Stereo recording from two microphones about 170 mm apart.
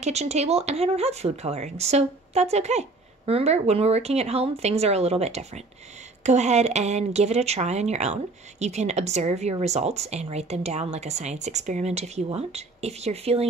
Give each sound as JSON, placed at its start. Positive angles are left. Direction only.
{"t": 0.0, "sound": "speech", "side_deg": -40}